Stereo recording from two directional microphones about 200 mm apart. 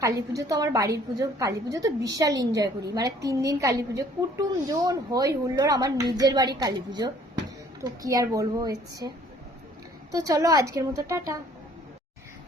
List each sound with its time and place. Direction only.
0.0 s a woman's voice: 15° right (ahead or behind)